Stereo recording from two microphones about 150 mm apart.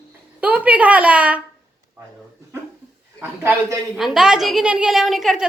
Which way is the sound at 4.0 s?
Centre (ahead or behind).